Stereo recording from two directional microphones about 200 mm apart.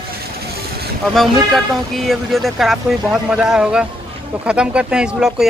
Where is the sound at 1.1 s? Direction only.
Centre (ahead or behind).